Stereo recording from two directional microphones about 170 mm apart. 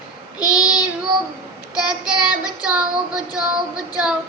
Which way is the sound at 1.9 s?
5° right (ahead or behind).